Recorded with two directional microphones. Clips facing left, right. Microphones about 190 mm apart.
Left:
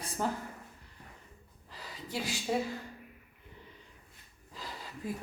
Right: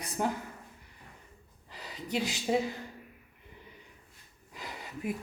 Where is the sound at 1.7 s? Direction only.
20° right (ahead or behind).